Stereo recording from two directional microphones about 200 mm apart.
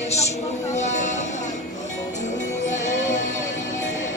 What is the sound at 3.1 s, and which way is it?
Music, 40° left (ahead or behind).